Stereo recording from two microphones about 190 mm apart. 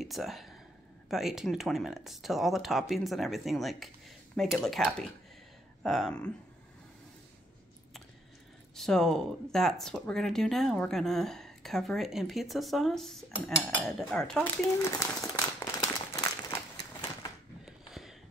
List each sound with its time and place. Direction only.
0.0 s speech: centre (ahead or behind)
8.7 s speech: centre (ahead or behind)
13.6 s cutlery: centre (ahead or behind); by 16.5 s 15° left (ahead or behind)
17.6 s a sound: centre (ahead or behind)